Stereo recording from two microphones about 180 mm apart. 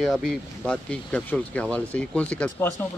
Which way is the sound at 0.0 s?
Centre (ahead or behind).